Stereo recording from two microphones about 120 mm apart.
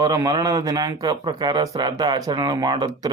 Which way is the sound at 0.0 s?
35° right (ahead or behind).